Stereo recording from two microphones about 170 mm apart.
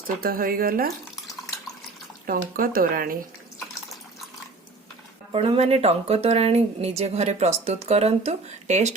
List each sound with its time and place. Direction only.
0.2 s speech: 60° right (ahead or behind)
2.2 s speech: 60° right (ahead or behind)
5.3 s speech: 35° right (ahead or behind)